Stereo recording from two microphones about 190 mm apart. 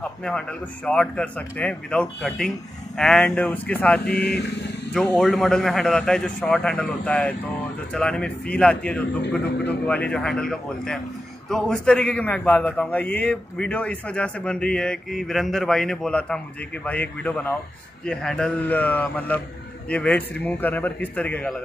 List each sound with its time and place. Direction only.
0.0 s a man's voice: 5° left (ahead or behind)
4.0 s speech: 55° left (ahead or behind)
4.9 s a man's voice: 5° left (ahead or behind)